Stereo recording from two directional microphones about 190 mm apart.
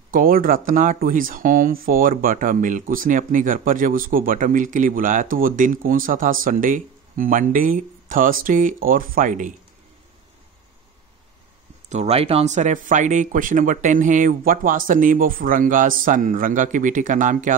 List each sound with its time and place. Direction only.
0.1 s speech: 50° right (ahead or behind)
11.9 s speech: 35° right (ahead or behind)